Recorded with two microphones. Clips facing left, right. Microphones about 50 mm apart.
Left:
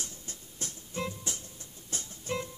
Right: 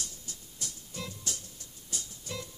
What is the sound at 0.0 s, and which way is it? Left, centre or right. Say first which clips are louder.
Music: left 1 dB; left.